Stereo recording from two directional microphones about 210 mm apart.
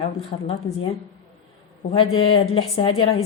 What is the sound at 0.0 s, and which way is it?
Speech, 25° left (ahead or behind).